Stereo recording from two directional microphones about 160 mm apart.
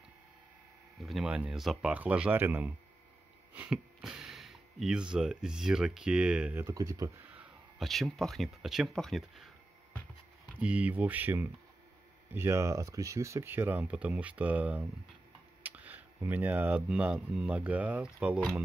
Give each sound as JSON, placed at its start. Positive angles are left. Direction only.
{"t": 1.0, "sound": "speech", "side_deg": -5}
{"t": 6.6, "sound": "speech", "side_deg": -20}
{"t": 7.2, "sound": "speech", "side_deg": -5}
{"t": 10.6, "sound": "speech", "side_deg": -10}